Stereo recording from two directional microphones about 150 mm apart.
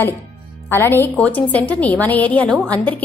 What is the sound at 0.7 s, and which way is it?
A woman's voice, 15° left (ahead or behind).